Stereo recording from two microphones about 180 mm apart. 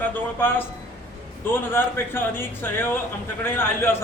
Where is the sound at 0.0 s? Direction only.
10° left (ahead or behind).